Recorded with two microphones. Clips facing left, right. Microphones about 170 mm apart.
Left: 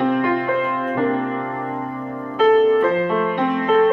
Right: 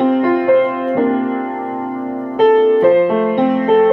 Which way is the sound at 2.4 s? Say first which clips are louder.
Right 4 dB; 25° right (ahead or behind).